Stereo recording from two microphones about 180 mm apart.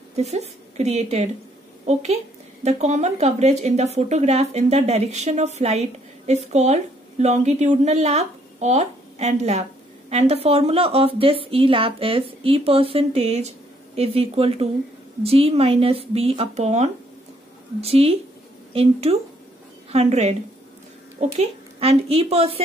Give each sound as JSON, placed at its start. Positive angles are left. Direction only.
{"t": 0.1, "sound": "a woman's voice", "side_deg": -35}
{"t": 21.4, "sound": "speech", "side_deg": -35}